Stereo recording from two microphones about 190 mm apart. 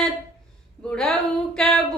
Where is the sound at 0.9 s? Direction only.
5° left (ahead or behind).